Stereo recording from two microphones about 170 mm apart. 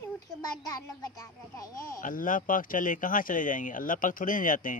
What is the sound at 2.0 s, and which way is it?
Speech, 50° left (ahead or behind).